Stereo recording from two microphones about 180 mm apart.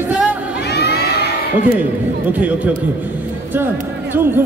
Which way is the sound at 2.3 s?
10° right (ahead or behind).